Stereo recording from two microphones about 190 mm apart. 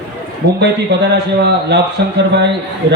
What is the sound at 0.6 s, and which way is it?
Speech, 60° right (ahead or behind).